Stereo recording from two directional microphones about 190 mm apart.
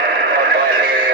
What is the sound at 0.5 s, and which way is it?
Synthetic singing, 50° right (ahead or behind).